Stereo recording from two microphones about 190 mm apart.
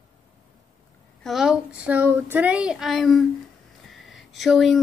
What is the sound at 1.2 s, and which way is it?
A woman's voice, centre (ahead or behind).